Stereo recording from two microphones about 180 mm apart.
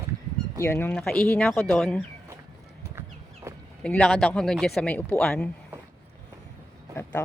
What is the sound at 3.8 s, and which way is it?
Speech, 5° left (ahead or behind).